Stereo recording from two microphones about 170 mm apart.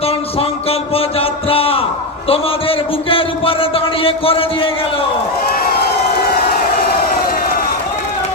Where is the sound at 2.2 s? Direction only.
35° left (ahead or behind).